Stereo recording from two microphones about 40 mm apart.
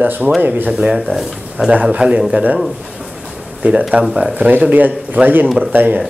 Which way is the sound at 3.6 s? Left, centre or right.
Right.